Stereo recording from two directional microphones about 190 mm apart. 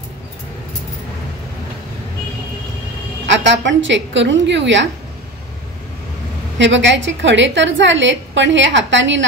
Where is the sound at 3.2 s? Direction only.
70° right (ahead or behind).